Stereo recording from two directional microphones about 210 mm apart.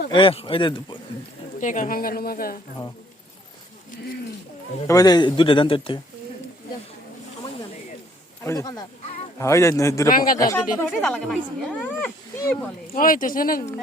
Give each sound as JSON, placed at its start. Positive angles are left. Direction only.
{"t": 0.1, "sound": "a man's voice", "side_deg": 25}
{"t": 1.6, "sound": "a woman's voice", "side_deg": 40}
{"t": 4.9, "sound": "a man's voice", "side_deg": 20}
{"t": 8.4, "sound": "speech", "side_deg": 15}
{"t": 9.4, "sound": "speech", "side_deg": 15}
{"t": 10.1, "sound": "speech", "side_deg": 40}
{"t": 10.3, "sound": "speech", "side_deg": 15}
{"t": 11.0, "sound": "speech", "side_deg": 0}
{"t": 13.0, "sound": "speech", "side_deg": 40}